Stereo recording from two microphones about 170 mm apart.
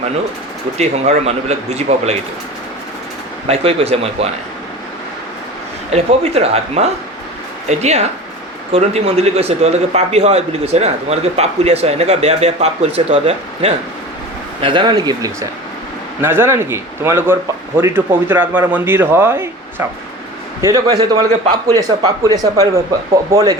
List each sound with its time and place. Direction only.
0.8 s speech: 40° right (ahead or behind)
3.4 s speech: 35° right (ahead or behind)
5.9 s a man's voice: 35° right (ahead or behind); by 19.5 s 15° right (ahead or behind)
20.6 s speech: 20° right (ahead or behind)